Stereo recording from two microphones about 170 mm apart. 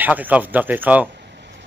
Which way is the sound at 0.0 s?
10° right (ahead or behind).